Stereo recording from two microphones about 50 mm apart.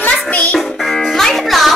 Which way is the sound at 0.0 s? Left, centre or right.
Left.